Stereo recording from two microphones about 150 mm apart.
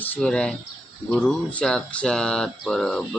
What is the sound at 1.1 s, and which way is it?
Speech, 10° left (ahead or behind).